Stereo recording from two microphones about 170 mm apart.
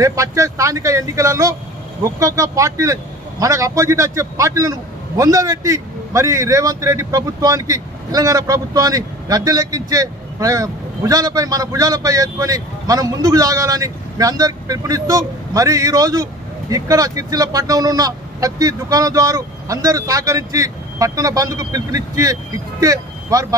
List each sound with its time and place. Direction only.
0.0 s a man's voice: 20° right (ahead or behind)